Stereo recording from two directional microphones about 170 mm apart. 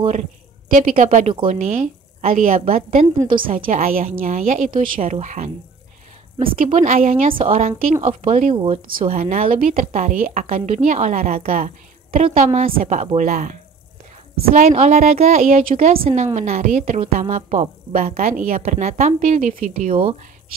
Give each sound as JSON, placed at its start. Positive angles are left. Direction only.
{"t": 0.7, "sound": "a woman's voice", "side_deg": -50}
{"t": 3.2, "sound": "a woman's voice", "side_deg": -30}
{"t": 3.4, "sound": "a woman's voice", "side_deg": -50}
{"t": 6.3, "sound": "speech", "side_deg": -30}
{"t": 6.6, "sound": "a woman's voice", "side_deg": -45}
{"t": 7.2, "sound": "a woman's voice", "side_deg": -35}